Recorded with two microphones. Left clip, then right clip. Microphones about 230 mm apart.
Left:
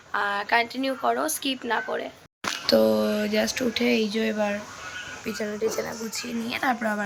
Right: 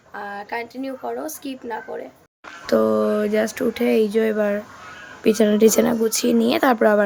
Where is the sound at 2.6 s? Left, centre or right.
Centre.